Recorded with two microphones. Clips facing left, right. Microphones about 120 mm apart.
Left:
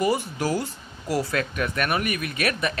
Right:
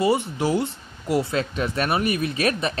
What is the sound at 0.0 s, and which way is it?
Speech, 25° right (ahead or behind).